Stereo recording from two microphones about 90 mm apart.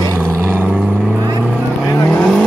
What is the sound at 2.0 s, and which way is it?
Vehicle, 10° left (ahead or behind).